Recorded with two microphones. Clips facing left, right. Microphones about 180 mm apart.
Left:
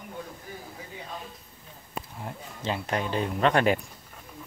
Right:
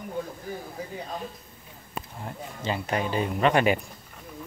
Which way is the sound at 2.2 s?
Centre (ahead or behind).